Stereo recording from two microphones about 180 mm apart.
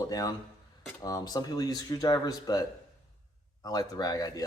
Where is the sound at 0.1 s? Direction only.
20° left (ahead or behind).